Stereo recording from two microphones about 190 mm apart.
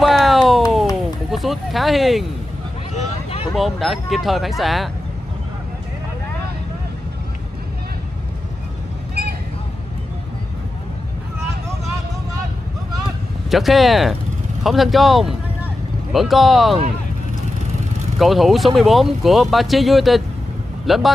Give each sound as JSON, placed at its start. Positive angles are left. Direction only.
{"t": 0.0, "sound": "a sound", "side_deg": 0}
{"t": 1.3, "sound": "speech", "side_deg": 0}
{"t": 2.9, "sound": "vehicle", "side_deg": 35}
{"t": 3.5, "sound": "speech", "side_deg": 0}
{"t": 13.5, "sound": "speech", "side_deg": 0}
{"t": 18.2, "sound": "speech", "side_deg": 0}